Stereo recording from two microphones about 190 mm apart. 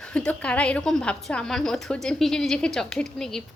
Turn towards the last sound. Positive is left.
turn(degrees=5)  # may be behind; listen again after turning